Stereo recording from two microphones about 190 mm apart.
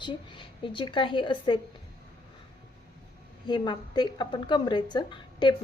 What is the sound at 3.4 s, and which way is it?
A woman's voice, 25° left (ahead or behind).